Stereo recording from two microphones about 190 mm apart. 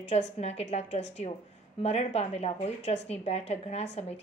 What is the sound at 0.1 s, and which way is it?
Speech, 35° left (ahead or behind).